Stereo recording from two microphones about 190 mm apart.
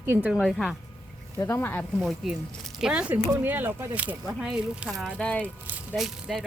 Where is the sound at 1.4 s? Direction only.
15° left (ahead or behind).